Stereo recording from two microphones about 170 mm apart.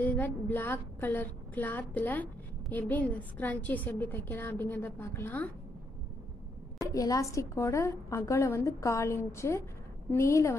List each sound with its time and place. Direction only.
0.0 s a woman's voice: 10° left (ahead or behind)
6.8 s a woman's voice: 20° left (ahead or behind)